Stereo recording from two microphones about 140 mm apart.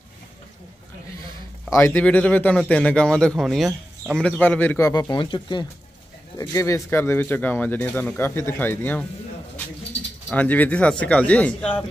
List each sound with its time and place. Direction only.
1.7 s speech: 15° left (ahead or behind)
5.1 s speech: 35° left (ahead or behind); by 9.0 s 10° left (ahead or behind)
10.3 s speech: 10° left (ahead or behind)